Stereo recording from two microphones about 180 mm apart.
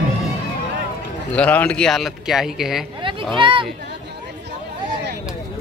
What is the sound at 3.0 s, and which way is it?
Speech, 30° right (ahead or behind).